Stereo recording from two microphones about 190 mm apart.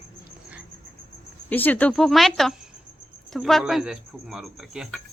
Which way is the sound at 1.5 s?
10° left (ahead or behind).